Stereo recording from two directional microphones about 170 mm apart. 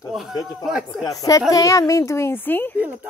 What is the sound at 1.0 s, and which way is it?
A child's voice, 20° left (ahead or behind).